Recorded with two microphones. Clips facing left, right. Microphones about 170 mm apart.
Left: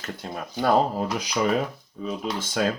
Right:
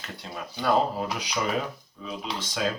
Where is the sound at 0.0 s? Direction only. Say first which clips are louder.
Left 4 dB; 45° left (ahead or behind).